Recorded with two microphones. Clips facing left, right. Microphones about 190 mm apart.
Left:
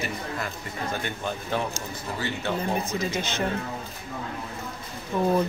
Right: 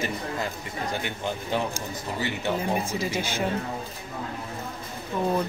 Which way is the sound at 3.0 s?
10° right (ahead or behind).